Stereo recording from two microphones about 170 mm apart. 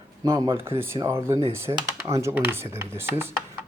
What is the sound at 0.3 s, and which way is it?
Speech, 20° right (ahead or behind).